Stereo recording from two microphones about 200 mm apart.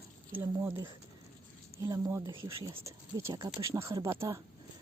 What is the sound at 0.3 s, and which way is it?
Speech, 10° right (ahead or behind).